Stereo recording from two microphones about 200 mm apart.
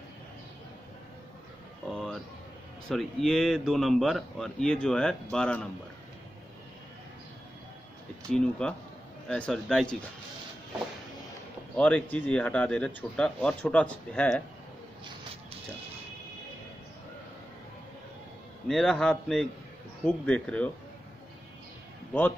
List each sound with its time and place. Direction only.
1.9 s a sound: centre (ahead or behind)
2.9 s speech: centre (ahead or behind)
8.3 s speech: 5° left (ahead or behind)
11.7 s speech: 5° left (ahead or behind)
18.7 s speech: 5° left (ahead or behind)